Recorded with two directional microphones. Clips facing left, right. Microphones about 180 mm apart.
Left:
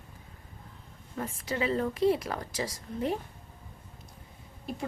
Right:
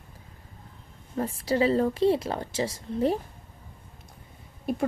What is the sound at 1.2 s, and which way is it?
A woman's voice, 35° right (ahead or behind).